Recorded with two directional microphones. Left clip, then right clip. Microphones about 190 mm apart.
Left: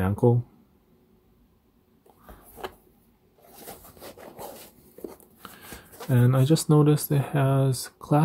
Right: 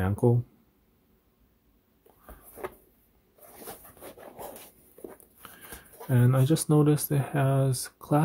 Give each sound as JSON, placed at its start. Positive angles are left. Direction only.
{"t": 0.0, "sound": "speech", "side_deg": 10}
{"t": 4.0, "sound": "dog", "side_deg": 10}
{"t": 5.4, "sound": "speech", "side_deg": 10}